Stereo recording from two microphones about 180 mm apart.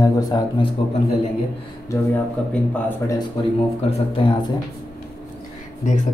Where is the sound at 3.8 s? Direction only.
30° left (ahead or behind).